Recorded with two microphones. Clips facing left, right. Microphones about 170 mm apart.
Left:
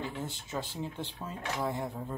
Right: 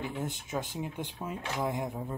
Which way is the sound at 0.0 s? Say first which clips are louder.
Right 2 dB; 15° right (ahead or behind).